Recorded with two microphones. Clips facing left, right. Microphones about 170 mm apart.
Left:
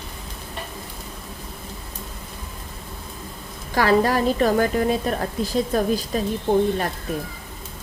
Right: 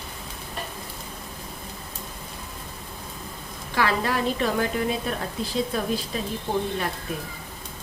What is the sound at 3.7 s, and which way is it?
A woman's voice, 40° left (ahead or behind).